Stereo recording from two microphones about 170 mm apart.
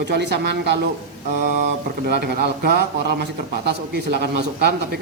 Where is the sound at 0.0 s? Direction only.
85° right.